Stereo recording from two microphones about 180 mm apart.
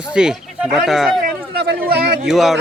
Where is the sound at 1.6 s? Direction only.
60° right (ahead or behind).